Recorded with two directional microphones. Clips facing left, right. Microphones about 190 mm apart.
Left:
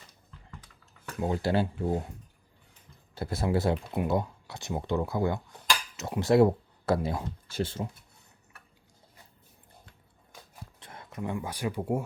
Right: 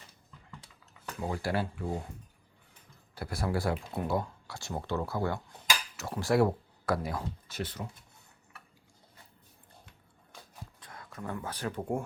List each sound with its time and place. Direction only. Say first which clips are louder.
1.2 s speech: left 5 dB; 25° left (ahead or behind)
3.2 s speech: left 4 dB; 25° left (ahead or behind)
10.8 s speech: left 6 dB; 25° left (ahead or behind); by 12.0 s 10° left (ahead or behind)